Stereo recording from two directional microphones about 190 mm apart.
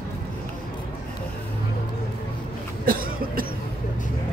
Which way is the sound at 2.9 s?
50° right (ahead or behind).